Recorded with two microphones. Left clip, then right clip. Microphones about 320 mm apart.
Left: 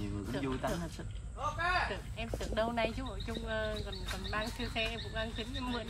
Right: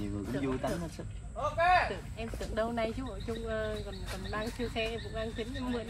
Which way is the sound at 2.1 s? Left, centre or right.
Centre.